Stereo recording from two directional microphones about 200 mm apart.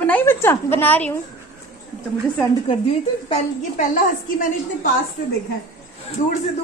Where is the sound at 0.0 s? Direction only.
10° left (ahead or behind).